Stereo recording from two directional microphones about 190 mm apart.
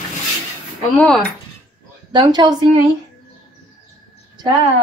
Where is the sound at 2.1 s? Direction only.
25° right (ahead or behind).